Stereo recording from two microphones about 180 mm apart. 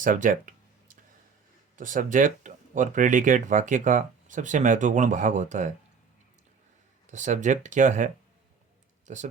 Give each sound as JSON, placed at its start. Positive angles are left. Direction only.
{"t": 0.0, "sound": "a sound", "side_deg": -45}
{"t": 1.7, "sound": "speech", "side_deg": -45}
{"t": 7.1, "sound": "speech", "side_deg": -45}